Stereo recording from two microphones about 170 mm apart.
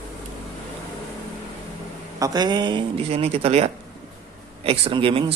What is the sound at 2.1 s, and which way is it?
A man's voice, 20° right (ahead or behind).